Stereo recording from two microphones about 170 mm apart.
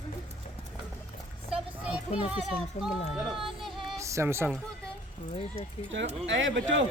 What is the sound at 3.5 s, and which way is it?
Music, centre (ahead or behind).